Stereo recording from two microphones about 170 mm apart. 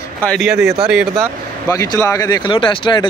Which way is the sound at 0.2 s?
Centre (ahead or behind).